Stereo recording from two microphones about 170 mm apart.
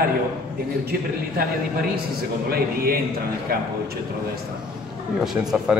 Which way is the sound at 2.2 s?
65° right (ahead or behind).